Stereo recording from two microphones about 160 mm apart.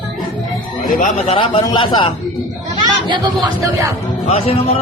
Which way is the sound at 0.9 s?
40° left (ahead or behind).